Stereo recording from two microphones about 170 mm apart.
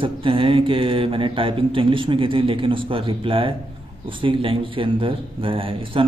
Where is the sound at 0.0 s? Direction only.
30° right (ahead or behind).